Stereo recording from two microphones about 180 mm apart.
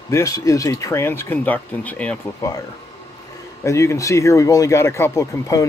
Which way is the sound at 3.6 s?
15° left (ahead or behind).